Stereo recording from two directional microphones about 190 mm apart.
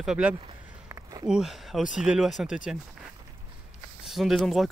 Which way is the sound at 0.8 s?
15° right (ahead or behind).